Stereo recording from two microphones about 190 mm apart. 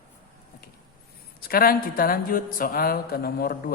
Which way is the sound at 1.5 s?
50° left (ahead or behind).